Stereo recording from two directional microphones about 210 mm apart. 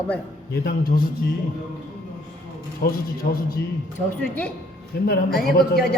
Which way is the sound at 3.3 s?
45° left (ahead or behind).